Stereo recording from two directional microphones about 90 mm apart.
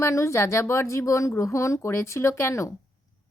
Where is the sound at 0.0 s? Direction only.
35° left (ahead or behind).